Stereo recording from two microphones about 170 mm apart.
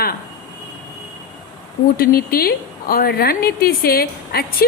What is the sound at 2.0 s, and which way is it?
A woman's voice, 60° left (ahead or behind).